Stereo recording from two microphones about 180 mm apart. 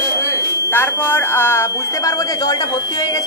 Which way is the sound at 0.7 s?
10° left (ahead or behind).